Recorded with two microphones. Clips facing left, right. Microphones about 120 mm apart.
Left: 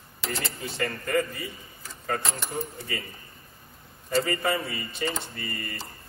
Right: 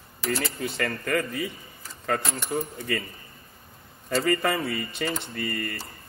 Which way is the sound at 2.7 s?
60° right (ahead or behind).